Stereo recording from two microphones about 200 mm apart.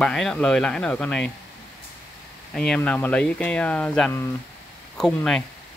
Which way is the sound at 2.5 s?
5° left (ahead or behind).